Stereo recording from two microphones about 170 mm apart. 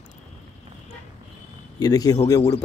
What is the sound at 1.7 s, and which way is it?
Speech, 20° left (ahead or behind).